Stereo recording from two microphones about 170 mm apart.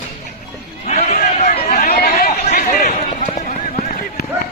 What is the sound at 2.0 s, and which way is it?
Chatter, 60° left (ahead or behind).